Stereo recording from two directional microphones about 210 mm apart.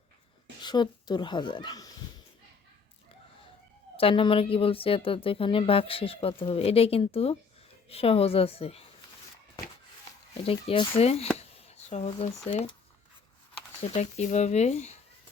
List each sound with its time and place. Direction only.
0.6 s speech: 20° left (ahead or behind)
3.9 s a woman's voice: 25° left (ahead or behind)
10.4 s a woman's voice: 25° left (ahead or behind)